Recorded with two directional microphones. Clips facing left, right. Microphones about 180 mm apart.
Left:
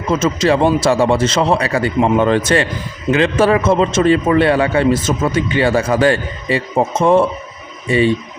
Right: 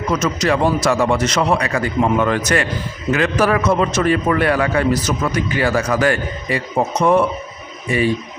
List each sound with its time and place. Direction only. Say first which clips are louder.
0.1 s a man's voice: left 4 dB; 25° left (ahead or behind)